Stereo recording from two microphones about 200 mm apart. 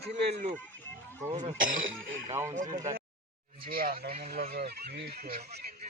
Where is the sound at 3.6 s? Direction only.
45° right (ahead or behind).